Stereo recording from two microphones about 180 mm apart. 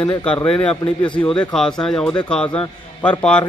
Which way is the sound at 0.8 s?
25° left (ahead or behind).